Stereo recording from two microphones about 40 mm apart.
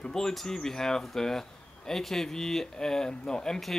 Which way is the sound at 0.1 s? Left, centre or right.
Centre.